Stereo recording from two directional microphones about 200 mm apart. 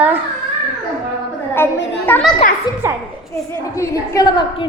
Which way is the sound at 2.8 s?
15° right (ahead or behind).